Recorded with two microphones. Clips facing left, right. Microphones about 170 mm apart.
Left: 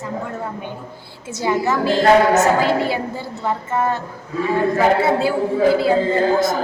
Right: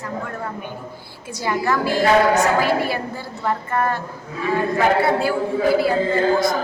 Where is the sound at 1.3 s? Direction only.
20° left (ahead or behind).